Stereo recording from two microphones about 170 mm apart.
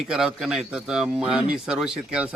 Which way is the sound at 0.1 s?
5° right (ahead or behind).